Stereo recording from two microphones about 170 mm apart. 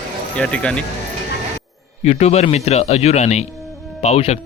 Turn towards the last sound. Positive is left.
turn(degrees=40)  # may be behind; listen again after turning